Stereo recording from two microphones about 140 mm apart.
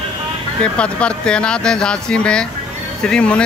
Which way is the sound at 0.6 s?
5° left (ahead or behind).